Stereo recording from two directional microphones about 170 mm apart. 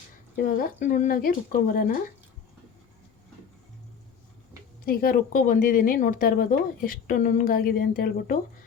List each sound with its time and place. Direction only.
0.4 s speech: 55° left (ahead or behind)
4.9 s speech: 60° left (ahead or behind)